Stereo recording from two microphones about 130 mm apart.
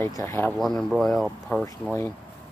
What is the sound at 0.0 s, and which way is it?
Speech, 25° left (ahead or behind).